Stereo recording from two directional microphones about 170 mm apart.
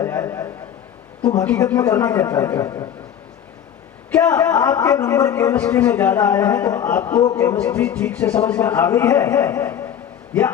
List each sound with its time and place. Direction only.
0.0 s a sound: 15° left (ahead or behind)
1.5 s a man's voice: 10° left (ahead or behind)
4.1 s a man's voice: 10° left (ahead or behind)